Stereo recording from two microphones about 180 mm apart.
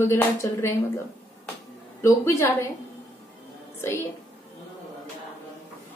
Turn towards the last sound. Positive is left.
turn(degrees=15)  # may be behind; listen again after turning